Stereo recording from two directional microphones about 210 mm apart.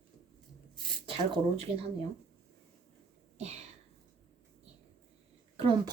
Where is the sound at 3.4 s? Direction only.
30° right (ahead or behind).